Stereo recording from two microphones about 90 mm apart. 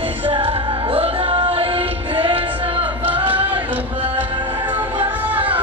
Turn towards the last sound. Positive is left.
turn(degrees=-20)  # may be behind; listen again after turning